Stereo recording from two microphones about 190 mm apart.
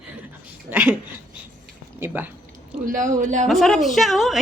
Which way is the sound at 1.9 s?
10° right (ahead or behind).